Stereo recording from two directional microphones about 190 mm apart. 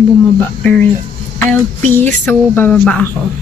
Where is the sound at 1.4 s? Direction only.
10° left (ahead or behind).